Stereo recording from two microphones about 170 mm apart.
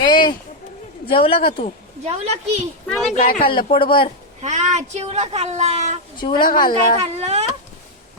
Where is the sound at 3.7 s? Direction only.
30° left (ahead or behind).